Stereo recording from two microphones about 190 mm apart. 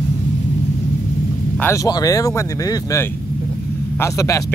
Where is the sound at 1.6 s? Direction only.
15° left (ahead or behind).